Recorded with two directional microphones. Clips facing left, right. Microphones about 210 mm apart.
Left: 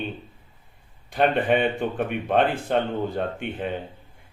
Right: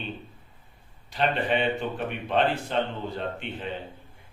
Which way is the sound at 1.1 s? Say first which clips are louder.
Left 5 dB; 50° left (ahead or behind).